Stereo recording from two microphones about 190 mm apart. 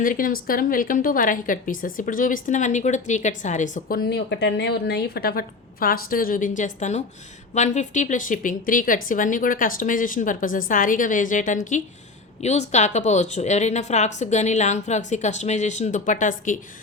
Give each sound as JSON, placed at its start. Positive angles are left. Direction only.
{"t": 0.0, "sound": "a woman's voice", "side_deg": 45}